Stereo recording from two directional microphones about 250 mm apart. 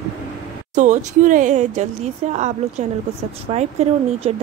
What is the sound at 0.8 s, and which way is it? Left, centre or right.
A woman's voice, right.